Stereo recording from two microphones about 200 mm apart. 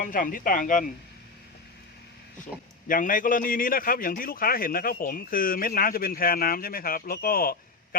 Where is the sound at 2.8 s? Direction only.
40° left (ahead or behind).